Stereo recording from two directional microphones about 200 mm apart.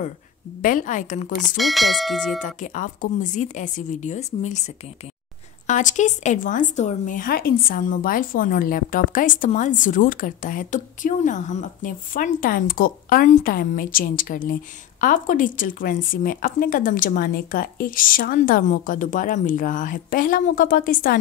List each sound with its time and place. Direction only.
0.6 s speech: 45° left (ahead or behind)
1.6 s speech: centre (ahead or behind)
2.4 s speech: 40° left (ahead or behind)